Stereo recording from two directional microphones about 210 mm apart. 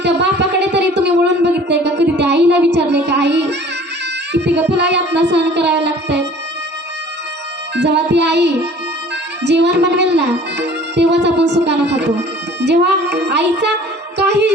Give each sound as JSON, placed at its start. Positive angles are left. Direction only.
{"t": 0.0, "sound": "a sound", "side_deg": -55}
{"t": 4.3, "sound": "speech", "side_deg": -55}
{"t": 7.8, "sound": "speech", "side_deg": -55}
{"t": 12.5, "sound": "music", "side_deg": -55}
{"t": 14.2, "sound": "speech", "side_deg": -55}